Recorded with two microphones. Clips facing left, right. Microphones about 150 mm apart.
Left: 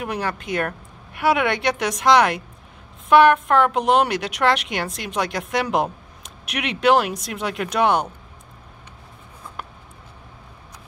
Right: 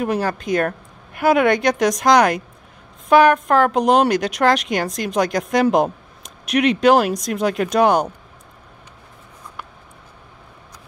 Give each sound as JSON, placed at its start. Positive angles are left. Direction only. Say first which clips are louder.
{"t": 0.0, "sound": "a woman's voice", "louder": "right 5 dB", "side_deg": -40}